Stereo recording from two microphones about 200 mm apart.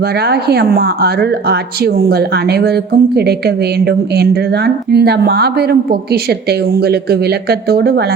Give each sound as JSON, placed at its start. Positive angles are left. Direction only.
{"t": 0.0, "sound": "speech", "side_deg": -55}